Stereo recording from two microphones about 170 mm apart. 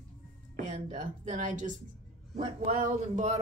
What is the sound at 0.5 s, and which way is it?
Speech, 50° right (ahead or behind).